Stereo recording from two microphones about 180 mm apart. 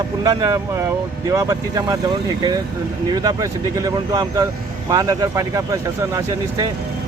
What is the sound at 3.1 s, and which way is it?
Speech, 20° right (ahead or behind).